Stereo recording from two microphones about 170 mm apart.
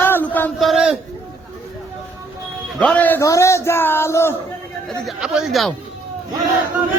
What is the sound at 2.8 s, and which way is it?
Speech, 10° left (ahead or behind).